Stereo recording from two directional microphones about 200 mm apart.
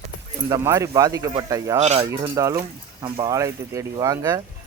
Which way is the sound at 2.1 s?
15° right (ahead or behind).